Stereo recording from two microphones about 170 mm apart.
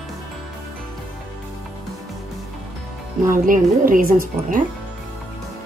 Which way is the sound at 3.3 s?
55° right (ahead or behind).